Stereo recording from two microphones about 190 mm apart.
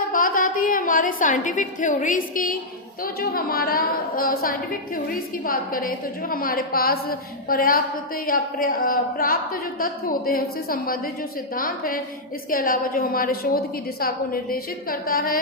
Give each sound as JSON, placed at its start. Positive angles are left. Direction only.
{"t": 0.1, "sound": "a woman's voice", "side_deg": 50}